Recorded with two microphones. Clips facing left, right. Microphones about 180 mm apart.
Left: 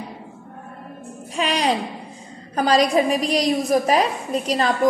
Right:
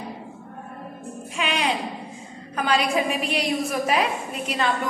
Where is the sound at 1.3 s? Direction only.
40° left (ahead or behind).